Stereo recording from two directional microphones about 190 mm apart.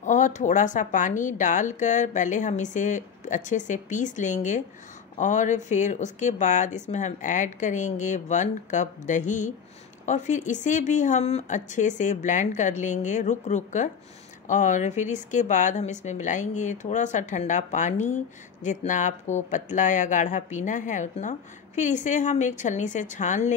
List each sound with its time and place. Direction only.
0.0 s speech: 40° left (ahead or behind)